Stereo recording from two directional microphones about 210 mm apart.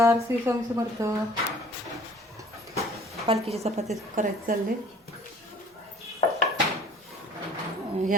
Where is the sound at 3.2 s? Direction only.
30° right (ahead or behind).